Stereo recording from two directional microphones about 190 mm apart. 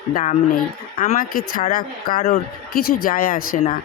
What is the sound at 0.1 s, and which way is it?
Speech, 45° left (ahead or behind).